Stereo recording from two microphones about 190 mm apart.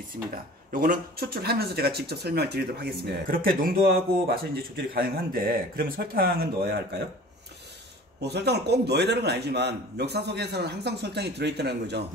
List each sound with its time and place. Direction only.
0.1 s a man's voice: 45° right (ahead or behind)
8.2 s a man's voice: 60° right (ahead or behind)